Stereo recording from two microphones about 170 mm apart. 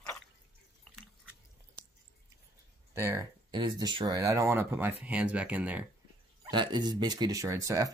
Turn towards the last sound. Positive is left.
turn(degrees=-20)  # may be behind; listen again after turning